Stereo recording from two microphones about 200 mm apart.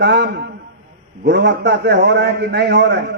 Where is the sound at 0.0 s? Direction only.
60° right (ahead or behind).